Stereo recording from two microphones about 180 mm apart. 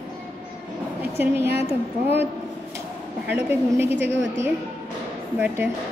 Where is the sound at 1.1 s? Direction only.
15° right (ahead or behind).